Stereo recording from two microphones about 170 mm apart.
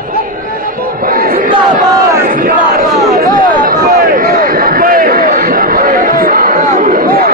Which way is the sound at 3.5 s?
55° right (ahead or behind).